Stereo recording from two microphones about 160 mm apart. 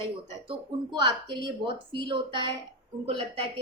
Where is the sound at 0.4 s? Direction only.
30° right (ahead or behind).